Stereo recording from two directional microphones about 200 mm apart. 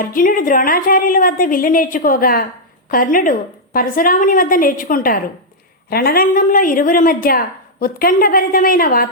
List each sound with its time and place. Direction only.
0.0 s a woman's voice: 45° left (ahead or behind)